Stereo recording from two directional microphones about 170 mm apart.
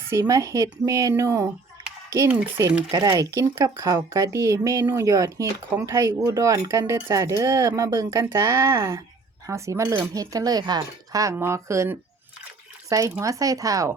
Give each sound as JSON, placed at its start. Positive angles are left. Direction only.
{"t": 0.1, "sound": "speech", "side_deg": -20}